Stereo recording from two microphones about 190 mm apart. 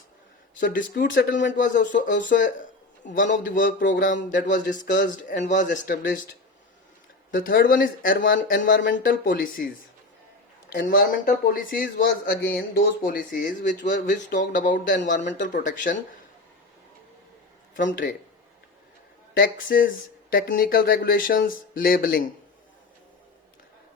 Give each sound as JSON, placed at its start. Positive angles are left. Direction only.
{"t": 0.6, "sound": "speech", "side_deg": 45}
{"t": 7.3, "sound": "speech", "side_deg": 50}
{"t": 10.7, "sound": "speech", "side_deg": 55}
{"t": 17.7, "sound": "speech", "side_deg": 45}
{"t": 19.3, "sound": "speech", "side_deg": 50}